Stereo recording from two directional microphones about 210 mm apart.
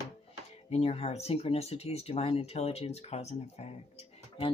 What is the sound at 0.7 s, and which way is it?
Speech, 30° left (ahead or behind).